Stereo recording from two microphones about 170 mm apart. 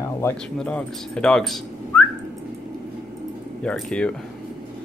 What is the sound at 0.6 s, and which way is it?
Speech, 5° left (ahead or behind).